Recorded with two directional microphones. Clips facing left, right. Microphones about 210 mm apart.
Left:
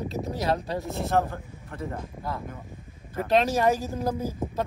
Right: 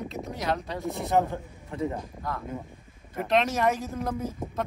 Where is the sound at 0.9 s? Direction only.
15° right (ahead or behind).